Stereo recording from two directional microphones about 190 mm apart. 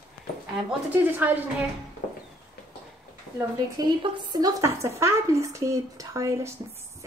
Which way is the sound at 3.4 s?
20° right (ahead or behind).